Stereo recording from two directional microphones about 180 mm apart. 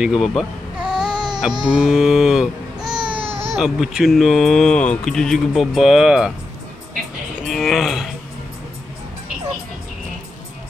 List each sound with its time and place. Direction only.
0.0 s baby cry: centre (ahead or behind)
1.6 s speech: 5° right (ahead or behind)
3.1 s baby cry: 30° right (ahead or behind)
3.5 s speech: centre (ahead or behind)
7.4 s a sound: centre (ahead or behind)